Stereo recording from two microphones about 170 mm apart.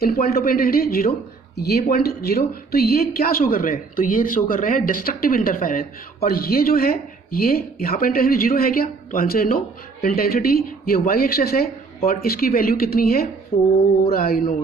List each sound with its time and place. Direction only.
0.0 s speech: 65° left (ahead or behind)